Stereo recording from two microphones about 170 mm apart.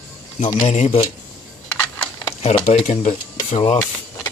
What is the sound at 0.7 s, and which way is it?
Speech, 35° left (ahead or behind).